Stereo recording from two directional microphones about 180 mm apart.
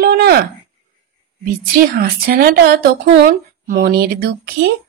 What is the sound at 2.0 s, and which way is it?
A woman's voice, 60° right (ahead or behind).